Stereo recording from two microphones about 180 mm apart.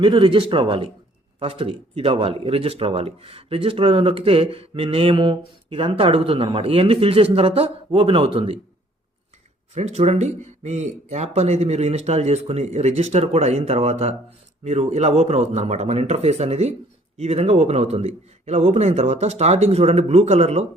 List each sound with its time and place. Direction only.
0.0 s speech: 25° right (ahead or behind)
9.7 s speech: 35° right (ahead or behind)